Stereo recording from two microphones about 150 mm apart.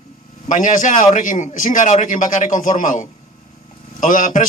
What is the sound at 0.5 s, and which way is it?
A man's voice, 60° left (ahead or behind).